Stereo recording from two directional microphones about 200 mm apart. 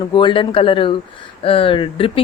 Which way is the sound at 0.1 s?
25° left (ahead or behind).